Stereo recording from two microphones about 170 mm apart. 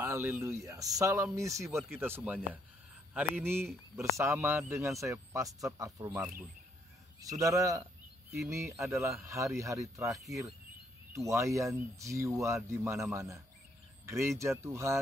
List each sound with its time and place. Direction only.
0.0 s a man's voice: 15° right (ahead or behind)